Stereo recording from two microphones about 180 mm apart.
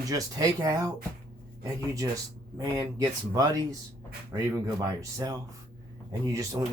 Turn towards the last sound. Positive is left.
turn(degrees=-20)  # may be behind; listen again after turning